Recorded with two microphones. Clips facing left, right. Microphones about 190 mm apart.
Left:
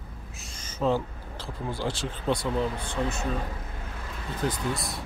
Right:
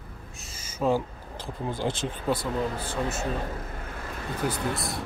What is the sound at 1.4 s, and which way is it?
Speech, 20° right (ahead or behind).